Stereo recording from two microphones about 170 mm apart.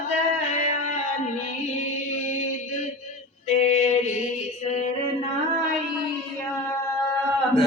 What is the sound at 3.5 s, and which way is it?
Mantra, 40° left (ahead or behind).